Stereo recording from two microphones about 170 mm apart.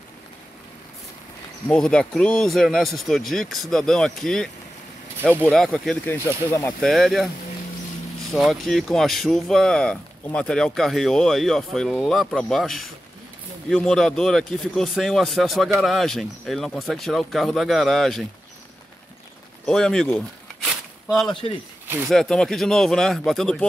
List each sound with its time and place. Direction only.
1.7 s speech: 5° left (ahead or behind)
6.8 s speech: centre (ahead or behind)
8.3 s speech: centre (ahead or behind)
19.6 s speech: 5° left (ahead or behind)
20.6 s a sound: centre (ahead or behind)
21.3 s a man's voice: 30° left (ahead or behind)
21.8 s speech: 10° right (ahead or behind)
22.1 s speech: 5° left (ahead or behind)